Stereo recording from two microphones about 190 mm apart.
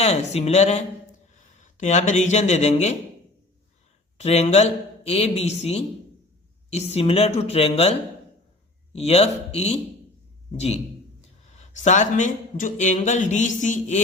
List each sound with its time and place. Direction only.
0.0 s speech: 35° left (ahead or behind)
4.2 s speech: 35° left (ahead or behind)
11.7 s speech: 40° left (ahead or behind)